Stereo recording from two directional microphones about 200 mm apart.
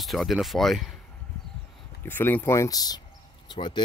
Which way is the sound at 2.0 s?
10° left (ahead or behind).